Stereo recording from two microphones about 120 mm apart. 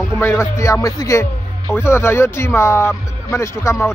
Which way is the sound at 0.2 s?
20° left (ahead or behind).